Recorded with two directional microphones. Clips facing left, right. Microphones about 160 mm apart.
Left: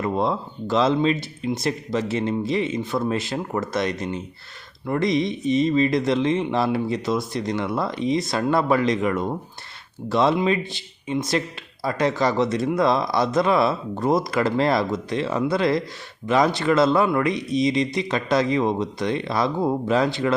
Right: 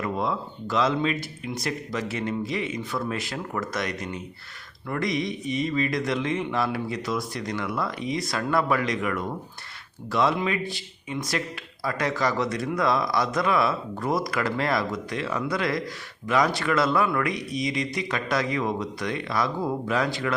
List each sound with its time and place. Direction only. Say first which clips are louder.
0.0 s speech: left 4 dB; 30° left (ahead or behind)